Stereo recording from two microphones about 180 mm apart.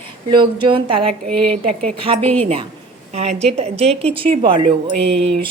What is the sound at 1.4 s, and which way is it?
A woman's voice, 30° right (ahead or behind).